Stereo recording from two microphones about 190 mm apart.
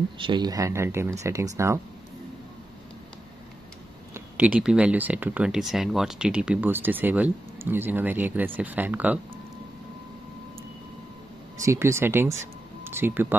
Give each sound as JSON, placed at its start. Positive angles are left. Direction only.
{"t": 0.2, "sound": "speech", "side_deg": -25}
{"t": 4.1, "sound": "speech", "side_deg": -5}
{"t": 11.6, "sound": "speech", "side_deg": -15}